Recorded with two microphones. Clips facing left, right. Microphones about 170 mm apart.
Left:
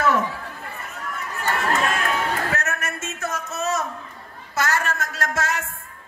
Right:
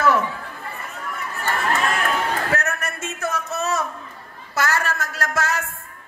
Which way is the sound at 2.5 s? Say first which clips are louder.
Right 2 dB; 35° right (ahead or behind).